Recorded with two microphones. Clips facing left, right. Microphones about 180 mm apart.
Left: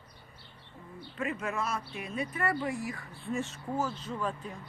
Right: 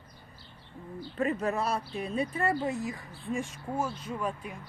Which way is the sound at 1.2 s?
35° right (ahead or behind).